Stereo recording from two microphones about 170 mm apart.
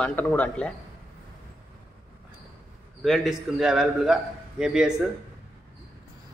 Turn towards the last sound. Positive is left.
turn(degrees=-5)  # may be behind; listen again after turning